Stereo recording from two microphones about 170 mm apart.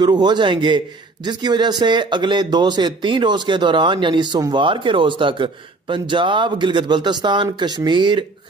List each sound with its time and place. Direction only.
0.0 s a man's voice: 25° right (ahead or behind)